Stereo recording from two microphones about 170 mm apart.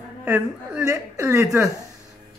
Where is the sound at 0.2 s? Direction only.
10° right (ahead or behind).